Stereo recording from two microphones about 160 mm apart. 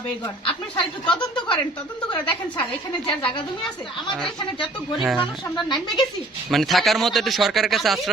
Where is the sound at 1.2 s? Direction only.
30° left (ahead or behind).